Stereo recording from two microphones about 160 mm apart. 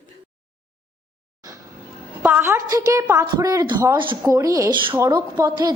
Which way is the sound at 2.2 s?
10° right (ahead or behind).